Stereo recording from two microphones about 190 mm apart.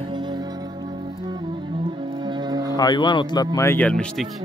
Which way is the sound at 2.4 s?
20° right (ahead or behind).